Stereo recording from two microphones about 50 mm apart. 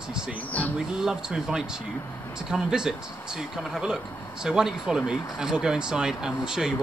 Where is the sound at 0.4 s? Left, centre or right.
Left.